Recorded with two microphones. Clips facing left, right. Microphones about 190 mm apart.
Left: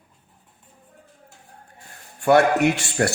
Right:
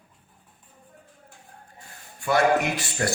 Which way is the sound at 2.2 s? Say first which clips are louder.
Left 5 dB; 65° left (ahead or behind).